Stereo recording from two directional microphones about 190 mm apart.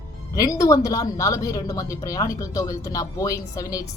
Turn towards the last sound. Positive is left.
turn(degrees=15)  # may be behind; listen again after turning